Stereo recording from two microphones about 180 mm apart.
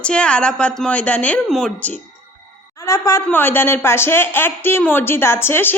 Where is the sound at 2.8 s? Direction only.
20° left (ahead or behind).